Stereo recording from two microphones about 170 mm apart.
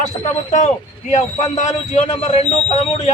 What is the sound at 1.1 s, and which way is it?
Speech, 45° left (ahead or behind).